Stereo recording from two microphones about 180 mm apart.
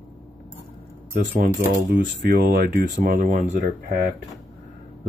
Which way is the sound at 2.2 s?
60° right (ahead or behind).